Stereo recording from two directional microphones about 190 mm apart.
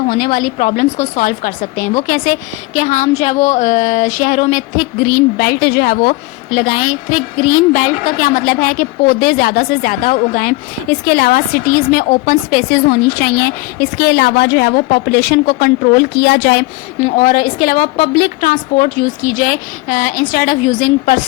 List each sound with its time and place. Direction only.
0.1 s a woman's voice: 45° left (ahead or behind); by 16.6 s 60° left (ahead or behind)
17.0 s speech: 45° left (ahead or behind)